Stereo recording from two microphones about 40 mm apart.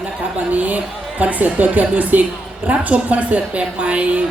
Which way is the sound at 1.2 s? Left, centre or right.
Right.